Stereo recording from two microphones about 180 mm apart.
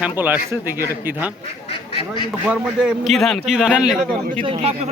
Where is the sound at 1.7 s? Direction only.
30° left (ahead or behind).